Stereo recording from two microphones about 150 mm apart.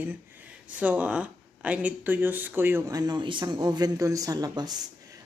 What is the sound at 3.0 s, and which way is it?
A man's voice, 30° right (ahead or behind).